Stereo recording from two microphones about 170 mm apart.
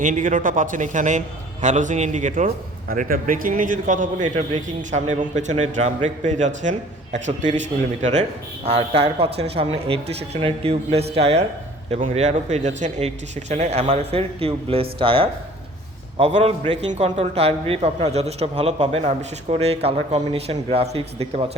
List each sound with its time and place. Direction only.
0.0 s a man's voice: 50° right (ahead or behind)
8.6 s a man's voice: 35° right (ahead or behind)